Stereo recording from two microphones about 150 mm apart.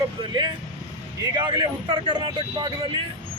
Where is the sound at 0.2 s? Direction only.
30° right (ahead or behind).